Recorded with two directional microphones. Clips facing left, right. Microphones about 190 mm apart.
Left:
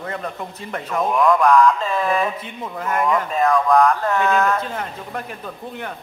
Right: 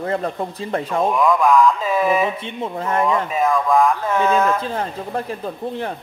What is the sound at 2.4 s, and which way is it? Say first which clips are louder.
Speech: right 4 dB; 30° right (ahead or behind).